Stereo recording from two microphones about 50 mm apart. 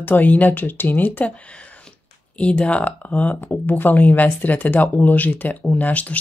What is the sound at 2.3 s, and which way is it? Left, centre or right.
Speech, left.